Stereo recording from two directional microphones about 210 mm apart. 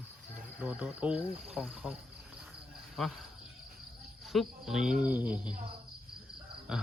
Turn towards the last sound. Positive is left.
turn(degrees=-5)  # may be behind; listen again after turning